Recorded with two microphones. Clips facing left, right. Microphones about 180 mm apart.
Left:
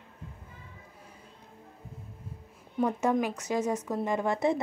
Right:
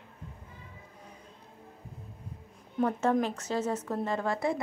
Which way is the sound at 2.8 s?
10° left (ahead or behind).